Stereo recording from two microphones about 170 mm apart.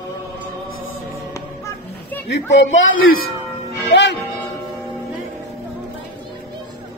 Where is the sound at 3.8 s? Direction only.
90° left.